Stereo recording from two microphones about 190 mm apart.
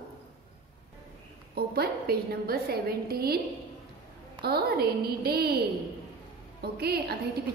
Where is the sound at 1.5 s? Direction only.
55° right (ahead or behind).